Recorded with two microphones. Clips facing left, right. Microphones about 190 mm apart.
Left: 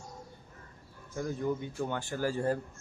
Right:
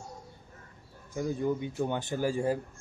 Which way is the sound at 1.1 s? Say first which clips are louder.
Right 3 dB; 15° right (ahead or behind).